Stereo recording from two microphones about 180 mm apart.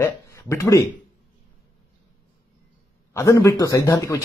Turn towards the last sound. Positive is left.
turn(degrees=20)  # may be behind; listen again after turning